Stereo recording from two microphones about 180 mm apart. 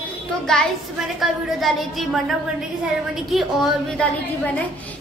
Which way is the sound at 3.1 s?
Centre (ahead or behind).